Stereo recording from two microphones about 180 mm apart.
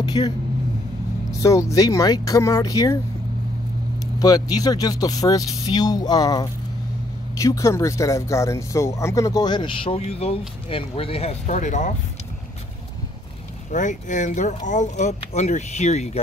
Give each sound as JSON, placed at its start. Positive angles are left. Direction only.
{"t": 0.0, "sound": "speech", "side_deg": 25}
{"t": 1.4, "sound": "speech", "side_deg": 15}
{"t": 4.0, "sound": "speech", "side_deg": 20}
{"t": 13.7, "sound": "speech", "side_deg": 45}